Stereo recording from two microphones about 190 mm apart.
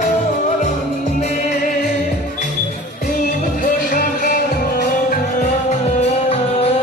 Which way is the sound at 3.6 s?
45° left (ahead or behind).